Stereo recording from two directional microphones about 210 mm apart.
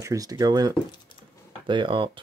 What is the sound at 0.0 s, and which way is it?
Speech, 15° right (ahead or behind).